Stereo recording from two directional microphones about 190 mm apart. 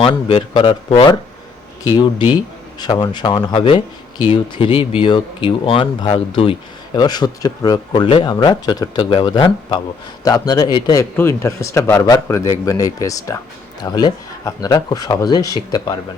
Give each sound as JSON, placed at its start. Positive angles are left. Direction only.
{"t": 0.0, "sound": "speech", "side_deg": 30}